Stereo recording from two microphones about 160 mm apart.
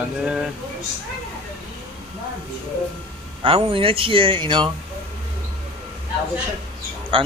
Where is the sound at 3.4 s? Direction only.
35° right (ahead or behind).